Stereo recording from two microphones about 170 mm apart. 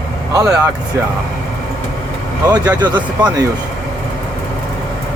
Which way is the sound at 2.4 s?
20° right (ahead or behind).